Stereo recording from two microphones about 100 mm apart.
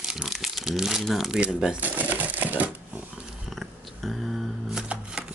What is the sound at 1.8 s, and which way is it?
Crumpling, 15° right (ahead or behind).